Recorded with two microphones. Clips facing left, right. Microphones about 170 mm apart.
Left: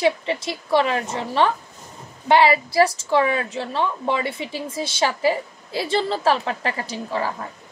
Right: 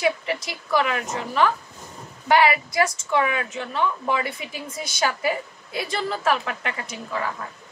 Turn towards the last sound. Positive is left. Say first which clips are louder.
# left 4 dB
turn(degrees=30)  # may be behind; listen again after turning